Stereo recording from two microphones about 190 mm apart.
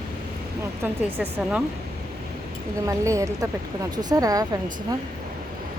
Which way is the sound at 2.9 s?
15° right (ahead or behind).